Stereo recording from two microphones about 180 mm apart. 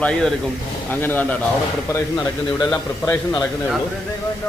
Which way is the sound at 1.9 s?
20° left (ahead or behind).